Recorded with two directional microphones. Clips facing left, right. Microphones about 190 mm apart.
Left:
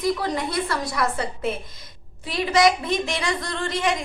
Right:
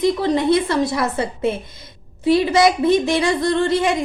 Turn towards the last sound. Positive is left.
turn(degrees=-30)  # may be behind; listen again after turning